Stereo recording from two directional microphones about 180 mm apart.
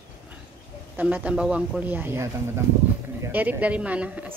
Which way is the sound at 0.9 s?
10° right (ahead or behind).